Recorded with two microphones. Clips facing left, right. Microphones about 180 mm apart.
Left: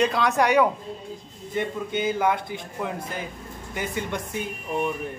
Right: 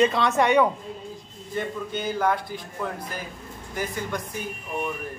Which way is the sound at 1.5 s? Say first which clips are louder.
Left 2 dB; 20° left (ahead or behind).